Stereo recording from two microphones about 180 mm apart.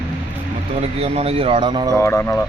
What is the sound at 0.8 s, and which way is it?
Speech, 35° right (ahead or behind).